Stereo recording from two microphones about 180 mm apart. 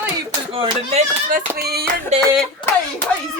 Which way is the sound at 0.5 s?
35° right (ahead or behind).